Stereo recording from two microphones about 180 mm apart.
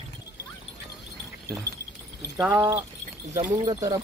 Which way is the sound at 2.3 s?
10° right (ahead or behind).